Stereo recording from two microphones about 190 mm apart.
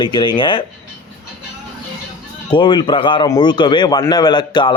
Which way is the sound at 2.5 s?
25° left (ahead or behind).